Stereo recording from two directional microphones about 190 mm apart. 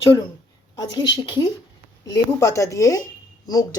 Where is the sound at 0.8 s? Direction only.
20° left (ahead or behind).